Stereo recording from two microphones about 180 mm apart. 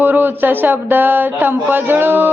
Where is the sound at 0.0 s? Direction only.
10° right (ahead or behind).